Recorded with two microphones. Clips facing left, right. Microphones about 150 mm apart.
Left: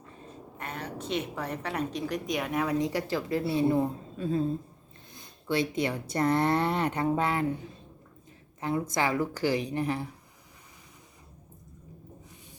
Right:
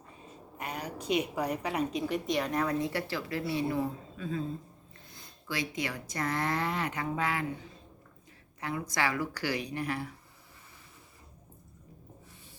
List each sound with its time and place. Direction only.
0.6 s a sound: 10° right (ahead or behind)
1.4 s a woman's voice: 10° right (ahead or behind); by 2.8 s 10° left (ahead or behind)
2.9 s speech: 20° left (ahead or behind)
8.6 s speech: 25° left (ahead or behind)